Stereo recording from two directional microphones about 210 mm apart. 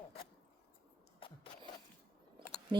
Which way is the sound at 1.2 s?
25° left (ahead or behind).